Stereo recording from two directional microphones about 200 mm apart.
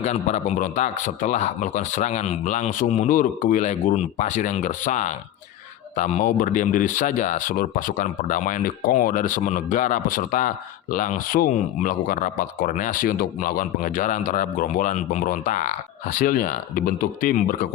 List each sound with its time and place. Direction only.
0.0 s speech: 35° left (ahead or behind)